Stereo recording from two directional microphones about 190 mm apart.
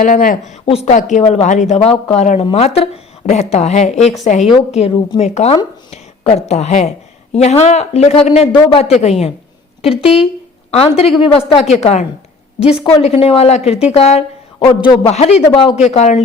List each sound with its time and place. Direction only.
0.0 s speech: 45° left (ahead or behind)
9.9 s speech: 5° right (ahead or behind)
10.7 s speech: 30° left (ahead or behind)
12.5 s a woman's voice: 5° right (ahead or behind)
13.0 s speech: 30° left (ahead or behind)